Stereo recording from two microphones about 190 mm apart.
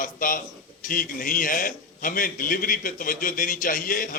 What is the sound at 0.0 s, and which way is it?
A man's voice, 45° left (ahead or behind).